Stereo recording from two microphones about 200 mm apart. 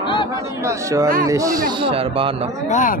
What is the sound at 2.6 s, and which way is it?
Speech, 40° left (ahead or behind).